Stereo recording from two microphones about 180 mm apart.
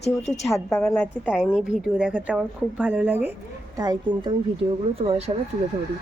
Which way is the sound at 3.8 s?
25° right (ahead or behind).